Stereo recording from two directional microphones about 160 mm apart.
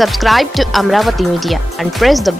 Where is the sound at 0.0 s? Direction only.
Centre (ahead or behind).